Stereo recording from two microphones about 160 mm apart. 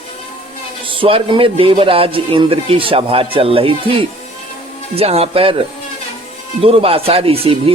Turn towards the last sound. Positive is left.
turn(degrees=-35)  # may be behind; listen again after turning